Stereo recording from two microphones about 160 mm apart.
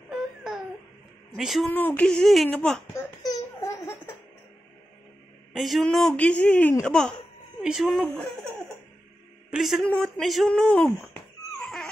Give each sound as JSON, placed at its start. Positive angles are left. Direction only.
{"t": 0.1, "sound": "a sound", "side_deg": -5}
{"t": 1.3, "sound": "speech", "side_deg": 0}
{"t": 1.7, "sound": "speech", "side_deg": 10}
{"t": 2.9, "sound": "laughter", "side_deg": 20}
{"t": 5.5, "sound": "speech", "side_deg": 0}
{"t": 9.5, "sound": "speech", "side_deg": 0}